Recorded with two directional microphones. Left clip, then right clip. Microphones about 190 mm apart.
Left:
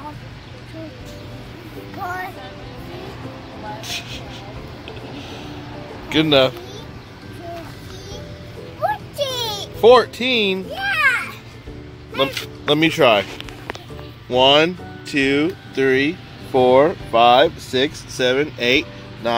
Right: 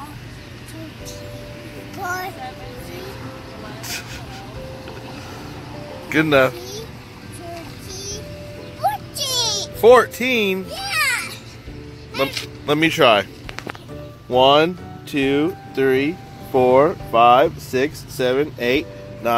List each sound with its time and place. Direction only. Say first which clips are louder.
3.8 s a sound: even; centre (ahead or behind)
6.0 s a man's voice: even; centre (ahead or behind)
9.2 s music: right 3 dB; 15° left (ahead or behind)
9.8 s a child's voice: even; centre (ahead or behind)
14.3 s speech: even; 5° right (ahead or behind)